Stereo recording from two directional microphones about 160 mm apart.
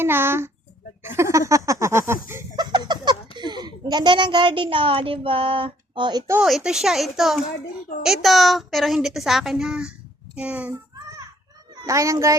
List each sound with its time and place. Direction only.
0.0 s a child's voice: 15° right (ahead or behind)
1.0 s a sound: 15° right (ahead or behind)
3.3 s a child's voice: 25° right (ahead or behind)
6.4 s a woman's voice: 5° right (ahead or behind)
11.8 s a child's voice: 20° right (ahead or behind)